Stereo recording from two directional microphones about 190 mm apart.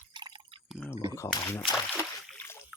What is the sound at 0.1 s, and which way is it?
Drip, 25° right (ahead or behind).